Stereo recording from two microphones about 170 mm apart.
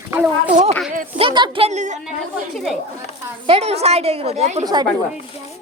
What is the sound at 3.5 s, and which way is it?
A woman's voice, 35° right (ahead or behind).